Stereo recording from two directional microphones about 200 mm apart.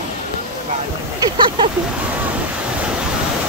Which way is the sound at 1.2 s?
25° right (ahead or behind).